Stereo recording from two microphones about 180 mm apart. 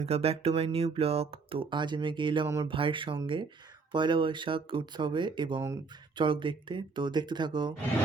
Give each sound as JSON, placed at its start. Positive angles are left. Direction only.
{"t": 0.0, "sound": "speech", "side_deg": -35}